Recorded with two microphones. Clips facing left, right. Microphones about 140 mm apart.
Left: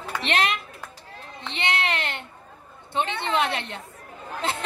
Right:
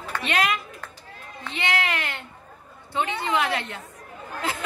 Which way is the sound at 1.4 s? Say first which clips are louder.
Even; 25° left (ahead or behind).